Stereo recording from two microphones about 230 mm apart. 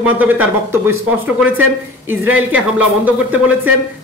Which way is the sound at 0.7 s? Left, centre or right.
Centre.